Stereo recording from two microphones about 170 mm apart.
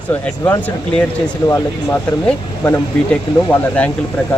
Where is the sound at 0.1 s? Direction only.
10° left (ahead or behind).